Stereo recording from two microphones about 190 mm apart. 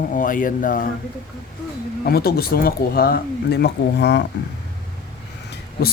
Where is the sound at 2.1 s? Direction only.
55° left (ahead or behind).